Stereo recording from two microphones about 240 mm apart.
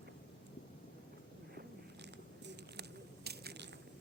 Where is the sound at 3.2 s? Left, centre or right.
Right.